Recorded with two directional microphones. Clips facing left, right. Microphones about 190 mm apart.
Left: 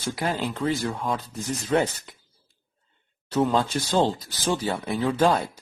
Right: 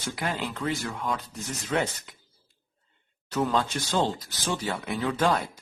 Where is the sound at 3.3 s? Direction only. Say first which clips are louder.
Left 4 dB; 30° left (ahead or behind).